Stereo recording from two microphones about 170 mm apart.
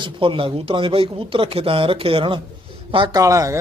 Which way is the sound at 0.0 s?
30° right (ahead or behind).